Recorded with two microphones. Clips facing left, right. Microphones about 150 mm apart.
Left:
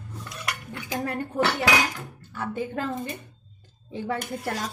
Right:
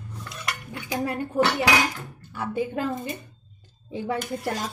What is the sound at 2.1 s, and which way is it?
A woman's voice, 15° right (ahead or behind).